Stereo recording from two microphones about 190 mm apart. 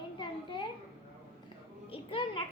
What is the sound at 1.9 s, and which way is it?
Speech, 25° left (ahead or behind).